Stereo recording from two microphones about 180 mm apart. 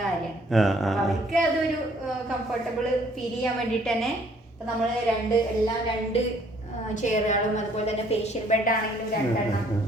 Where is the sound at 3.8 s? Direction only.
5° left (ahead or behind).